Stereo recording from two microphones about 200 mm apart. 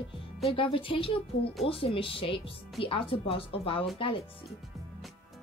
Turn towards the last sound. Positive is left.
turn(degrees=25)  # may be behind; listen again after turning